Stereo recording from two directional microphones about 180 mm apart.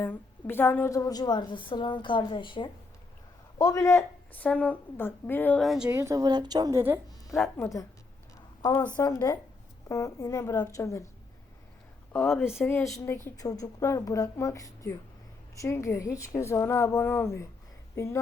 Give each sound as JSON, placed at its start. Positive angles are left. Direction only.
{"t": 0.0, "sound": "a woman's voice", "side_deg": 10}
{"t": 5.9, "sound": "a woman's voice", "side_deg": -15}
{"t": 7.3, "sound": "speech", "side_deg": 0}
{"t": 7.5, "sound": "a woman's voice", "side_deg": 15}
{"t": 12.1, "sound": "a woman's voice", "side_deg": 10}